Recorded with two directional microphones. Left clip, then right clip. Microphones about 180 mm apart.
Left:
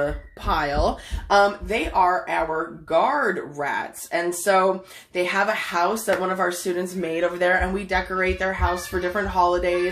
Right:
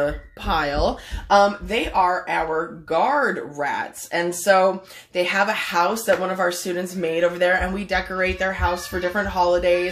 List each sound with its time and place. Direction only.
0.0 s speech: 10° right (ahead or behind)